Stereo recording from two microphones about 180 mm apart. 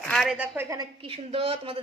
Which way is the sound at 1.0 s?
30° right (ahead or behind).